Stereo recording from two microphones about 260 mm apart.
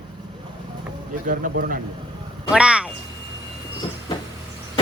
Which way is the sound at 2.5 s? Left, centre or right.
Centre.